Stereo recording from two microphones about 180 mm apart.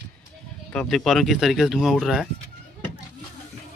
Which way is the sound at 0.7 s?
5° left (ahead or behind).